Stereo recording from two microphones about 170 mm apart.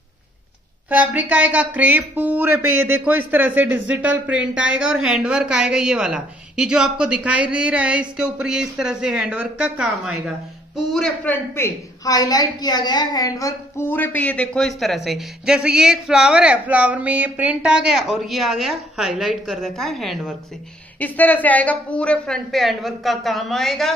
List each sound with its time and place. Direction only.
0.8 s speech: 10° right (ahead or behind)
11.5 s a woman's voice: 20° left (ahead or behind); by 23.9 s centre (ahead or behind)